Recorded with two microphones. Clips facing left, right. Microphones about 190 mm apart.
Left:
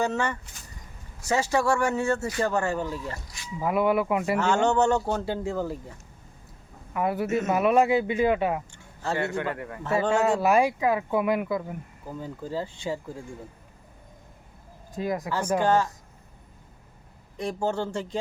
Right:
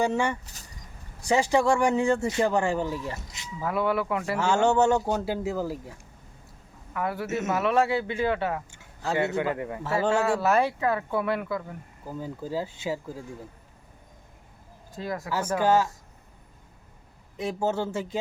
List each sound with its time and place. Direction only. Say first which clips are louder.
0.0 s speech: right 1 dB; 15° right (ahead or behind)
3.6 s speech: left 3 dB; 15° left (ahead or behind)
4.4 s speech: right 2 dB; 10° right (ahead or behind)
6.9 s a man's voice: left 4 dB; 20° left (ahead or behind)
7.3 s speech: left 3 dB; centre (ahead or behind)
7.5 s speech: left 3 dB; 15° left (ahead or behind)
9.1 s a man's voice: right 3 dB; 20° right (ahead or behind)
10.2 s speech: left 2 dB; 15° left (ahead or behind)
12.2 s speech: right 1 dB; 10° right (ahead or behind)
14.9 s speech: left 4 dB; 20° left (ahead or behind)
15.6 s speech: right 2 dB; 5° right (ahead or behind)
17.3 s speech: even; 5° right (ahead or behind)